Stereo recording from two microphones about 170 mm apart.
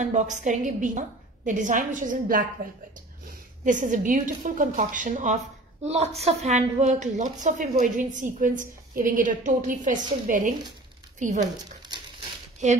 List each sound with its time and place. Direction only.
0.0 s a woman's voice: 45° right (ahead or behind)
5.9 s a woman's voice: 40° right (ahead or behind)